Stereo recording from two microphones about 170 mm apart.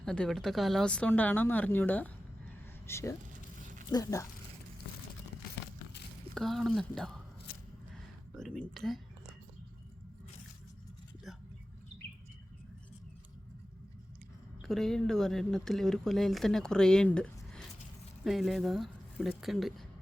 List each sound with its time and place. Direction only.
0.0 s speech: 5° left (ahead or behind); by 4.3 s 20° left (ahead or behind)
6.3 s speech: centre (ahead or behind)
8.4 s speech: centre (ahead or behind)
14.6 s speech: centre (ahead or behind)